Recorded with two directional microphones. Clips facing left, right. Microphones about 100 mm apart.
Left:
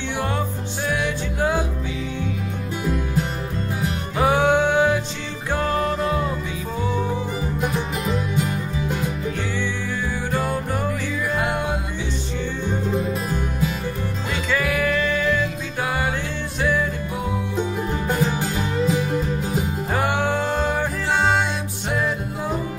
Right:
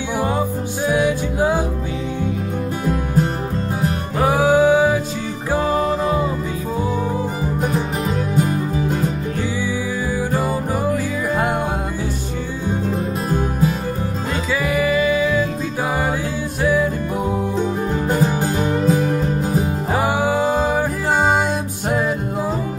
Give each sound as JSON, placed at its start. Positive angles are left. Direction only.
{"t": 1.0, "sound": "music", "side_deg": -10}
{"t": 2.8, "sound": "music", "side_deg": -40}
{"t": 4.2, "sound": "music", "side_deg": 0}
{"t": 10.4, "sound": "music", "side_deg": -5}
{"t": 10.9, "sound": "music", "side_deg": -45}
{"t": 13.3, "sound": "music", "side_deg": -40}
{"t": 14.5, "sound": "music", "side_deg": -5}
{"t": 18.0, "sound": "music", "side_deg": -40}
{"t": 19.9, "sound": "music", "side_deg": -10}